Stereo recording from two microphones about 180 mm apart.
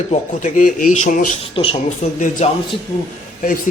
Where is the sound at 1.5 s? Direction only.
30° left (ahead or behind).